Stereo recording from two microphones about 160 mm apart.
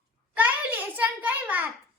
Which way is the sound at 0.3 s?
10° right (ahead or behind).